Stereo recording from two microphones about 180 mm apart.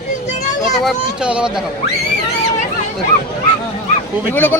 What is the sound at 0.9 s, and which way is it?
Speech, 5° right (ahead or behind).